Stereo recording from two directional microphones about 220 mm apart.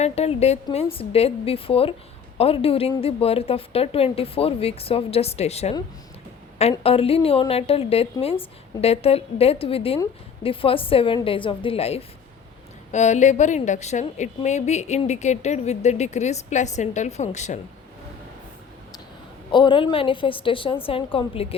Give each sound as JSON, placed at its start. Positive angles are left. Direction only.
{"t": 0.0, "sound": "a woman's voice", "side_deg": 30}
{"t": 19.5, "sound": "a woman's voice", "side_deg": 20}